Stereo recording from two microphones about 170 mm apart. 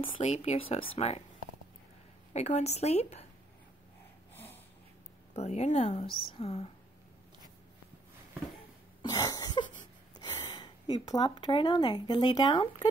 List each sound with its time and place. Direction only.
0.0 s a woman's voice: 40° left (ahead or behind)
2.3 s a woman's voice: 40° left (ahead or behind)
4.3 s snort: 10° left (ahead or behind)
5.3 s a woman's voice: 40° left (ahead or behind)
9.0 s cough: 20° left (ahead or behind)
10.1 s speech: 25° left (ahead or behind)